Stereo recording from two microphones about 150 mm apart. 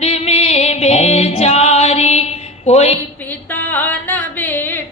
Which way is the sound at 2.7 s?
45° left (ahead or behind).